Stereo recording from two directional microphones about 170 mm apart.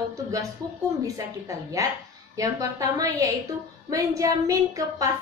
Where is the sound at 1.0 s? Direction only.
20° right (ahead or behind).